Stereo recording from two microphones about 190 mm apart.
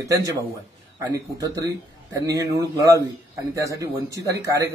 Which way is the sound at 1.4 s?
20° right (ahead or behind).